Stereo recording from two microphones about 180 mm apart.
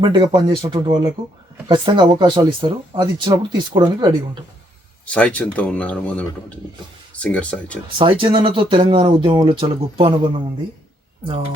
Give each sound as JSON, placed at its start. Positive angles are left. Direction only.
{"t": 0.0, "sound": "speech", "side_deg": -25}
{"t": 5.0, "sound": "speech", "side_deg": 5}
{"t": 7.9, "sound": "speech", "side_deg": -30}